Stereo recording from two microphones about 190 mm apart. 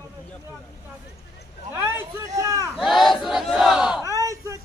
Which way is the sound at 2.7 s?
Centre (ahead or behind).